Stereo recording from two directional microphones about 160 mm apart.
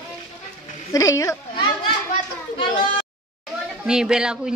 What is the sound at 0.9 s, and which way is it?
Speech, 20° left (ahead or behind).